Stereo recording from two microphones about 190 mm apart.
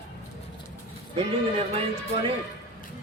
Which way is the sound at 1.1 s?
30° right (ahead or behind).